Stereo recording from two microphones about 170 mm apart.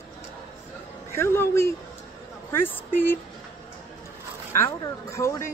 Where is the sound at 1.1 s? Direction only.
15° left (ahead or behind).